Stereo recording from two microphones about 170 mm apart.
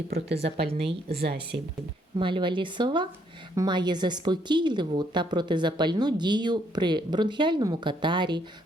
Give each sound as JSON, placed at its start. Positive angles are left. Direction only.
{"t": 0.4, "sound": "speech", "side_deg": -75}
{"t": 0.7, "sound": "a woman's voice", "side_deg": -35}
{"t": 1.1, "sound": "speech", "side_deg": -70}
{"t": 2.1, "sound": "a woman's voice", "side_deg": -30}